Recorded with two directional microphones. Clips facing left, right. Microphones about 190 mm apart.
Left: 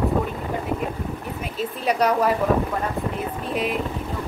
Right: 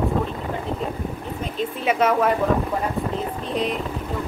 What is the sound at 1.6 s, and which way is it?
Speech, centre (ahead or behind).